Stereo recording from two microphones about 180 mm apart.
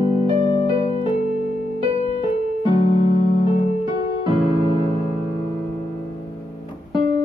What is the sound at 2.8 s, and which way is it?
Keyboard, 30° left (ahead or behind).